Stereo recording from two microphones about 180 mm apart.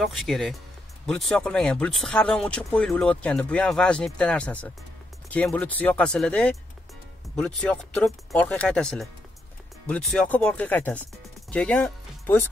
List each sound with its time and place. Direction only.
0.0 s speech: centre (ahead or behind)